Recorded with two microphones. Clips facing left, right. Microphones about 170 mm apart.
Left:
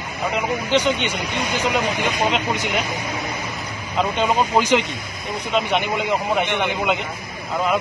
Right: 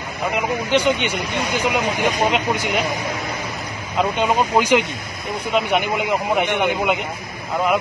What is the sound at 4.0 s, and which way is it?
Speech, 10° right (ahead or behind).